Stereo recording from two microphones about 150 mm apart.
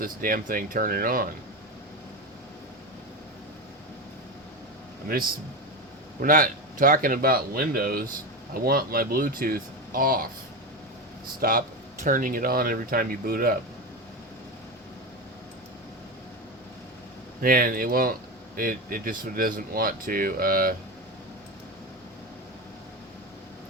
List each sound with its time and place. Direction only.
0.0 s speech: 70° right (ahead or behind)
6.2 s speech: 65° right (ahead or behind)
11.3 s speech: 75° right (ahead or behind)
17.4 s speech: 75° right (ahead or behind)